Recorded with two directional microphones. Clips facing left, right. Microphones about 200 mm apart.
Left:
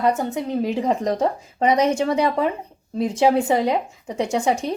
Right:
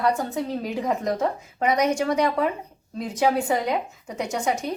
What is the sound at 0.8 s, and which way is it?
A woman's voice, 30° left (ahead or behind).